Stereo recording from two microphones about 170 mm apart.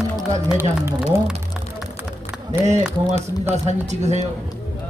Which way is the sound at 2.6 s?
40° right (ahead or behind).